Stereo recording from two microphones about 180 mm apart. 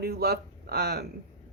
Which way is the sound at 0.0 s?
60° right (ahead or behind).